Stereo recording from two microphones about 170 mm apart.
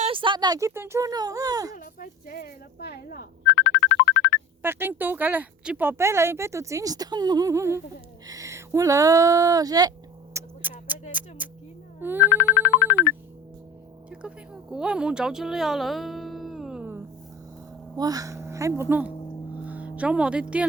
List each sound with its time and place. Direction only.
0.0 s speech: 30° right (ahead or behind)
1.7 s speech: 55° left (ahead or behind); by 4.4 s 90° left
4.6 s speech: 10° right (ahead or behind)
10.3 s tick-tock: 10° right (ahead or behind)
11.4 s a sound: 10° right (ahead or behind)
11.9 s speech: 10° right (ahead or behind)
12.4 s music: 90° left
14.1 s speech: 5° right (ahead or behind)
17.9 s speech: 20° right (ahead or behind)